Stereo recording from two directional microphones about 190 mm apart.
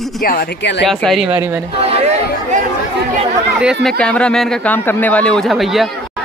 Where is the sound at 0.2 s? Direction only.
50° left (ahead or behind).